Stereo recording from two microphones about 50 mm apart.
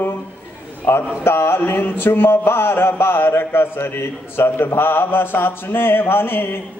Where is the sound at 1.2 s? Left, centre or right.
Left.